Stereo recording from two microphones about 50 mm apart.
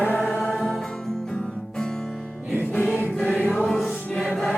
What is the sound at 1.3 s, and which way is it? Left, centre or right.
Music, centre.